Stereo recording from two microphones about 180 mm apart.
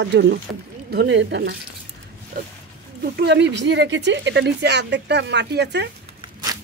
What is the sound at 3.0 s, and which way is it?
Speech, 65° right (ahead or behind).